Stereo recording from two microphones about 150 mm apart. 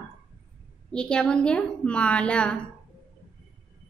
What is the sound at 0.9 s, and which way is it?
A woman's voice, 5° left (ahead or behind).